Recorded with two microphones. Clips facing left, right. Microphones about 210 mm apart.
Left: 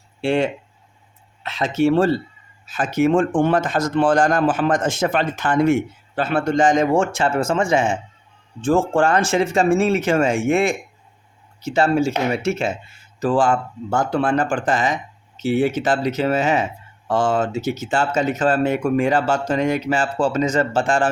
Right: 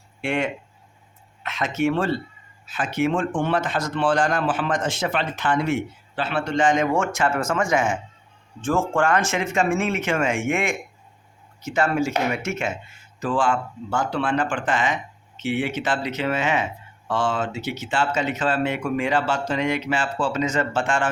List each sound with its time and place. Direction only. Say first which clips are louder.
0.2 s speech: left 5 dB; 30° left (ahead or behind)